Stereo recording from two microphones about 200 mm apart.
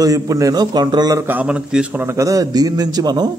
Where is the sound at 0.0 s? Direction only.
15° right (ahead or behind).